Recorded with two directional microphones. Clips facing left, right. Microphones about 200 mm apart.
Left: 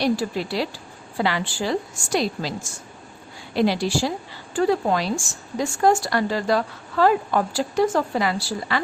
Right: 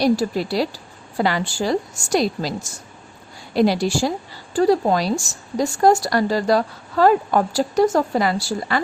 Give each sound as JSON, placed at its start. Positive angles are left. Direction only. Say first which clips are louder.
{"t": 0.0, "sound": "a woman's voice", "louder": "right 4 dB", "side_deg": -40}